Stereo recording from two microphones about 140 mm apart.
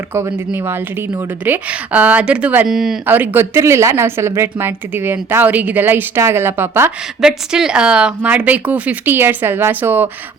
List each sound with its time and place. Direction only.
0.1 s a woman's voice: 20° right (ahead or behind)
3.1 s a woman's voice: 15° right (ahead or behind)
7.2 s a woman's voice: 5° right (ahead or behind)